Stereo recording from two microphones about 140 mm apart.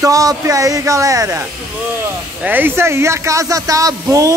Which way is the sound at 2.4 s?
15° right (ahead or behind).